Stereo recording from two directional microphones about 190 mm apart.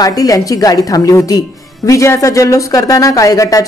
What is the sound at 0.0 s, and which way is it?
A woman's voice, 20° left (ahead or behind).